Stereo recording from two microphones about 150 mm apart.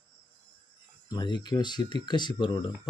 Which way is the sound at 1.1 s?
30° left (ahead or behind).